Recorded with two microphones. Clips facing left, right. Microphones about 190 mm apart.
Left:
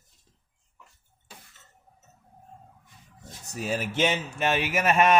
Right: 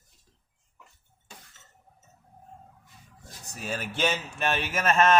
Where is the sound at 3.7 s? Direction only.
20° left (ahead or behind).